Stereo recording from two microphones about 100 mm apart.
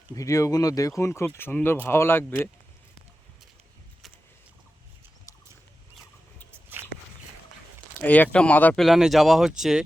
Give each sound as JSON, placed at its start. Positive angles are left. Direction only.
{"t": 0.1, "sound": "speech", "side_deg": 35}
{"t": 1.5, "sound": "speech", "side_deg": 10}
{"t": 1.9, "sound": "speech", "side_deg": 25}
{"t": 8.0, "sound": "speech", "side_deg": 15}
{"t": 8.7, "sound": "speech", "side_deg": 0}